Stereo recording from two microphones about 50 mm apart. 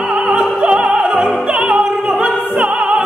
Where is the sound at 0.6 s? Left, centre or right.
Right.